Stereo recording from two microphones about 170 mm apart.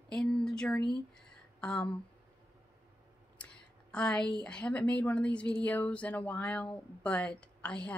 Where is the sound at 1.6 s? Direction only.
5° left (ahead or behind).